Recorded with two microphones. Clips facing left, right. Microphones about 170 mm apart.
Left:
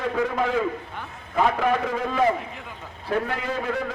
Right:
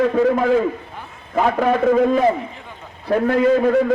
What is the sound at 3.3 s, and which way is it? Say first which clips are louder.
Speech: right 14 dB; 45° right (ahead or behind).